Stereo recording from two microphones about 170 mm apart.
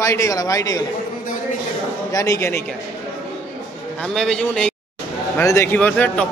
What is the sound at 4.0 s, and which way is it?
Speech, 5° left (ahead or behind).